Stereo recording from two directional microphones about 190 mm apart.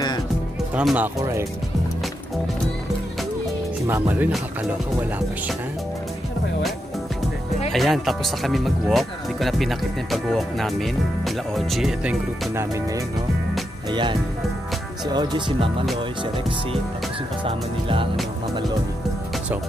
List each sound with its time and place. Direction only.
0.7 s speech: 5° right (ahead or behind)
4.1 s speech: 10° right (ahead or behind)
7.7 s speech: centre (ahead or behind)
15.1 s music: 25° right (ahead or behind)
17.5 s music: 30° right (ahead or behind)